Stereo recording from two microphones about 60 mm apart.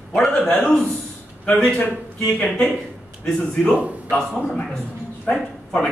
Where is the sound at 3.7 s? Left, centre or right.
Right.